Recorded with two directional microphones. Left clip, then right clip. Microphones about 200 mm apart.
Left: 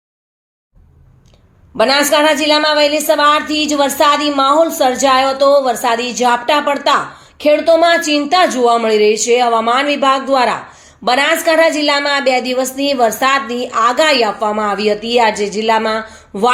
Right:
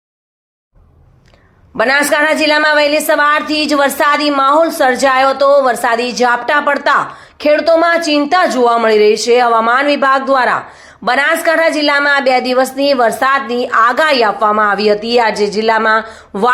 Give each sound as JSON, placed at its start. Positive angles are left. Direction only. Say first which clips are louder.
{"t": 1.7, "sound": "a woman's voice", "louder": "even", "side_deg": -5}
{"t": 3.4, "sound": "a woman's voice", "louder": "right 1 dB", "side_deg": -35}
{"t": 3.7, "sound": "a woman's voice", "louder": "even", "side_deg": -5}